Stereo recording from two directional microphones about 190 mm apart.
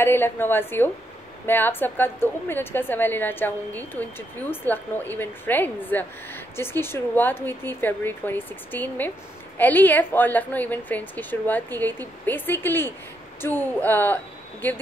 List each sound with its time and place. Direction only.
0.0 s a woman's voice: 10° left (ahead or behind)